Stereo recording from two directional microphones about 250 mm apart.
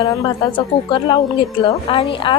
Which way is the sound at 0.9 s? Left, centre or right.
Centre.